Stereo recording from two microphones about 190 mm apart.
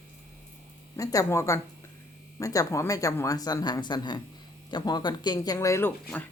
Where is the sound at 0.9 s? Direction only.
20° left (ahead or behind).